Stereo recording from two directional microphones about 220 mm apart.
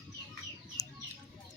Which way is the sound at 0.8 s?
15° left (ahead or behind).